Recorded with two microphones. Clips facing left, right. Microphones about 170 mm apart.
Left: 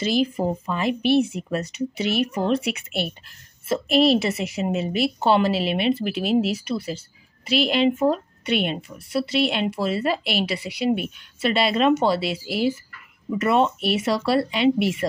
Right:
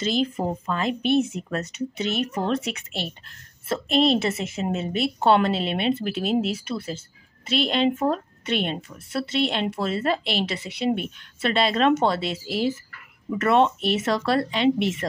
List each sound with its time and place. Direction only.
0.1 s a woman's voice: 5° left (ahead or behind)